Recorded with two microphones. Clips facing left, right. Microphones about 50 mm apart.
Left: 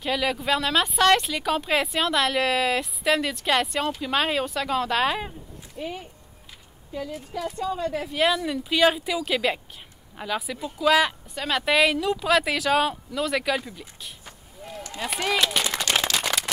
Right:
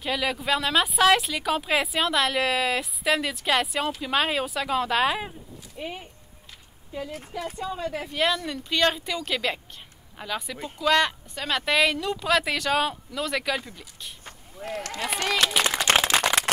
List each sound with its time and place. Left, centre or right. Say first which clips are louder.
0.0 s speech: left 2 dB; centre
5.8 s speech: left 2 dB; centre
7.3 s speech: left 3 dB; centre
14.6 s speech: right 5 dB; right
15.0 s speech: left 2 dB; centre
15.9 s a sound: right 4 dB; right